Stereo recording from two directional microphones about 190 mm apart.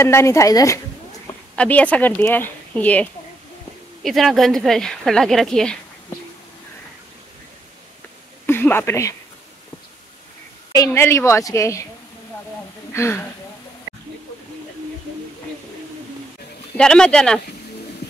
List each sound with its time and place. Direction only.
0.0 s speech: 15° left (ahead or behind)
1.6 s speech: 5° left (ahead or behind)
8.5 s speech: 10° left (ahead or behind)
10.9 s speech: 15° left (ahead or behind)
12.9 s speech: 15° left (ahead or behind)
16.7 s speech: 5° left (ahead or behind)